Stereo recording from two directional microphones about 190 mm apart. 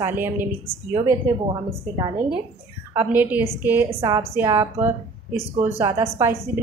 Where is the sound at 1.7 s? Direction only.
20° right (ahead or behind).